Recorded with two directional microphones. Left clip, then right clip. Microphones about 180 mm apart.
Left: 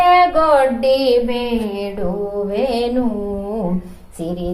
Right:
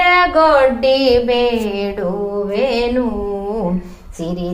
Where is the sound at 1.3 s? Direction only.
25° right (ahead or behind).